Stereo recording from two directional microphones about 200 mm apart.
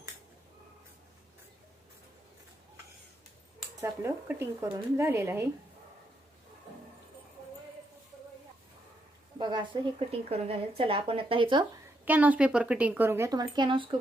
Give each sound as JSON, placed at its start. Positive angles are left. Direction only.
{"t": 3.8, "sound": "a woman's voice", "side_deg": -10}
{"t": 9.4, "sound": "a woman's voice", "side_deg": -20}
{"t": 12.0, "sound": "a woman's voice", "side_deg": -10}